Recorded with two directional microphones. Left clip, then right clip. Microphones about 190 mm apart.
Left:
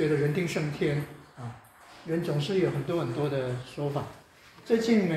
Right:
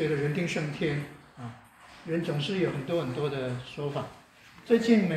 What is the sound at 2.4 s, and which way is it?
Speech, 30° left (ahead or behind).